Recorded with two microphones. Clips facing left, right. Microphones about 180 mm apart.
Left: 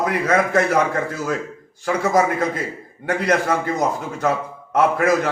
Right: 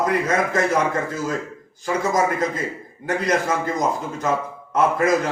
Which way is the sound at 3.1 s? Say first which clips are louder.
Left 2 dB; 60° left (ahead or behind).